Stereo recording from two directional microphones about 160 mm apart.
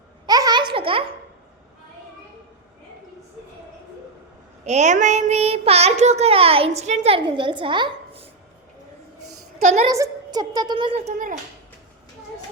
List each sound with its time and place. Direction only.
0.3 s a sound: 25° right (ahead or behind)
4.6 s child singing: 45° right (ahead or behind)
9.6 s a woman's voice: 45° right (ahead or behind)
9.9 s a woman's voice: 20° right (ahead or behind)
11.0 s a child's voice: 55° right (ahead or behind)